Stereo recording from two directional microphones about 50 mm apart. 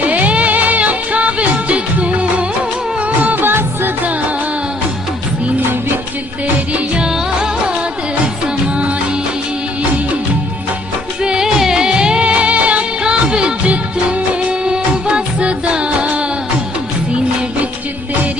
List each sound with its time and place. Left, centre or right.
0.0 s music: right
3.4 s music: right
7.0 s music: centre
11.2 s music: centre